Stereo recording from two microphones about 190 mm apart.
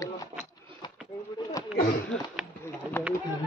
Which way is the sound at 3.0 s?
10° left (ahead or behind).